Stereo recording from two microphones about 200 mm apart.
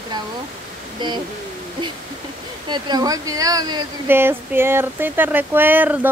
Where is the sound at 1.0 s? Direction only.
25° right (ahead or behind).